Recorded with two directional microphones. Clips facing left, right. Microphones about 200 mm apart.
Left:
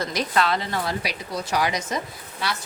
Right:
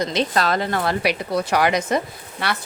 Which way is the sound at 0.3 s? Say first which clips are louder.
Left 1 dB; 45° right (ahead or behind).